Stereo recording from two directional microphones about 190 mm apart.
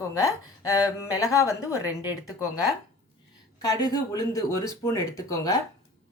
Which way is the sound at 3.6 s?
20° left (ahead or behind).